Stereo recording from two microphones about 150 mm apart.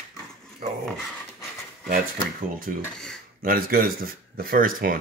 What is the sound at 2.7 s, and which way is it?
A man's voice, 70° right (ahead or behind).